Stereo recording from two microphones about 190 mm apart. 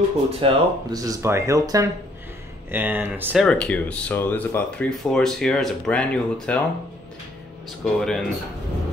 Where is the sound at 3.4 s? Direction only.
5° left (ahead or behind).